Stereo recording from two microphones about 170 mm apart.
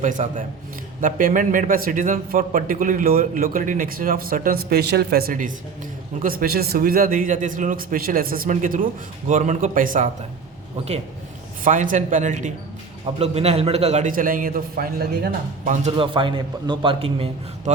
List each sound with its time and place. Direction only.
0.0 s a man's voice: 50° right (ahead or behind)
11.6 s a man's voice: 50° right (ahead or behind); by 15.7 s 65° right (ahead or behind)
15.7 s a man's voice: 35° right (ahead or behind)